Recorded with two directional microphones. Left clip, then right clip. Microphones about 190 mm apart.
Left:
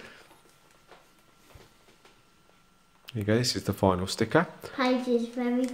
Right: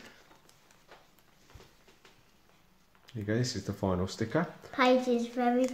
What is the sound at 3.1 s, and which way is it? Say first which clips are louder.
Speech: left 7 dB; 40° left (ahead or behind).